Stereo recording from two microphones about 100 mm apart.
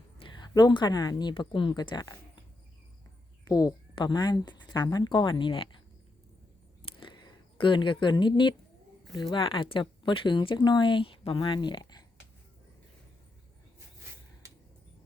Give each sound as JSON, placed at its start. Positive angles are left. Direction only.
{"t": 0.2, "sound": "speech", "side_deg": 50}
{"t": 3.4, "sound": "a woman's voice", "side_deg": 35}
{"t": 3.9, "sound": "speech", "side_deg": 45}
{"t": 6.8, "sound": "a sound", "side_deg": 60}
{"t": 9.1, "sound": "speech", "side_deg": 50}